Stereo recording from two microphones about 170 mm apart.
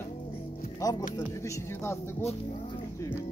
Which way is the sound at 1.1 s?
15° left (ahead or behind).